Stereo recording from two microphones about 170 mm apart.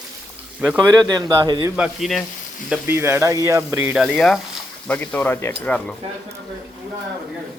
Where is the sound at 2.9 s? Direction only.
15° right (ahead or behind).